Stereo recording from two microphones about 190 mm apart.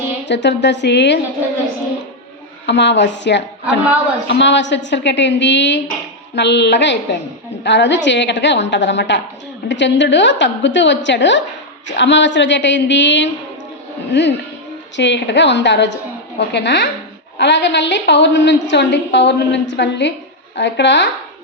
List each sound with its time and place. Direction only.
0.3 s a woman's voice: 65° left (ahead or behind)
2.6 s a woman's voice: 65° left (ahead or behind)